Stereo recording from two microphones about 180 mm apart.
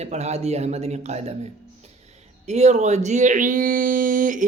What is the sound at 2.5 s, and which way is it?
Speech, 40° right (ahead or behind).